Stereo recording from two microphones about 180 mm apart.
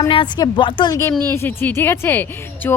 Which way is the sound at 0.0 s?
25° left (ahead or behind).